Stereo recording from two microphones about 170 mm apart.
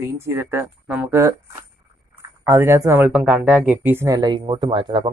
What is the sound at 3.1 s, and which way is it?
Speech, 5° right (ahead or behind).